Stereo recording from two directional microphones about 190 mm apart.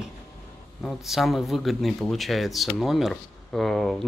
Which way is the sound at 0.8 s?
Centre (ahead or behind).